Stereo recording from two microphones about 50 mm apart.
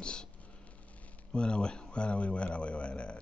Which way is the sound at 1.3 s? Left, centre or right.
Centre.